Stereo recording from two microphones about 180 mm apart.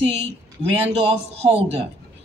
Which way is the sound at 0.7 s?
35° right (ahead or behind).